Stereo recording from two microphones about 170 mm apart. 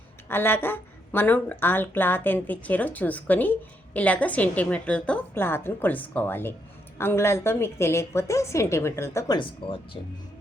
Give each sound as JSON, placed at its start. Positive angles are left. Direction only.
{"t": 0.3, "sound": "speech", "side_deg": 10}